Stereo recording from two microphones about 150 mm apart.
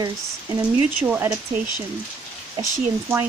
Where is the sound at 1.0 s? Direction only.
10° right (ahead or behind).